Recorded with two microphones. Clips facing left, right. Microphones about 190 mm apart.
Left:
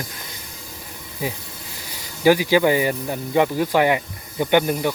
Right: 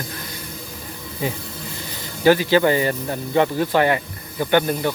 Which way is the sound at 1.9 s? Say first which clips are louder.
Even; 10° left (ahead or behind).